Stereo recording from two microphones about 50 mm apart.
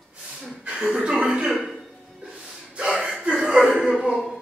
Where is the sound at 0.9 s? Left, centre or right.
Centre.